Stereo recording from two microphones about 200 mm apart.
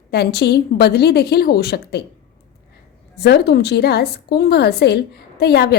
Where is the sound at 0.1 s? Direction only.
55° left (ahead or behind).